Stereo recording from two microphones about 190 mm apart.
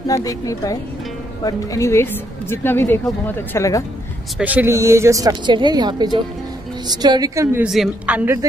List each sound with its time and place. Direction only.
0.1 s speech: 15° left (ahead or behind)
4.4 s a woman's voice: 10° right (ahead or behind)
7.6 s a woman's voice: 5° right (ahead or behind)